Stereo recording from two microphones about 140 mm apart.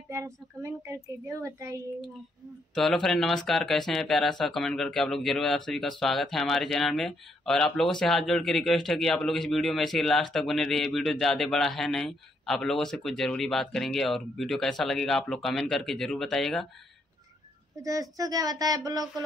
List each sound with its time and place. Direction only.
0.1 s speech: 20° right (ahead or behind)
2.7 s a man's voice: centre (ahead or behind)
18.1 s speech: 25° right (ahead or behind)